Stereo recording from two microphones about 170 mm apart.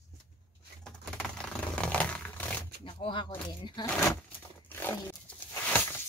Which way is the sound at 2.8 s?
30° left (ahead or behind).